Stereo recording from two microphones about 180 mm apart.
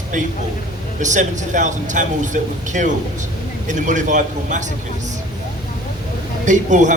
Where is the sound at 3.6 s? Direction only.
45° right (ahead or behind).